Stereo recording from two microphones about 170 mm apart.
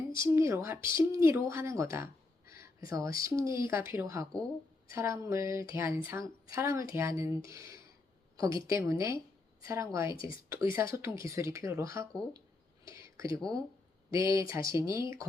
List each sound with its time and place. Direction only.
0.2 s speech: 15° right (ahead or behind)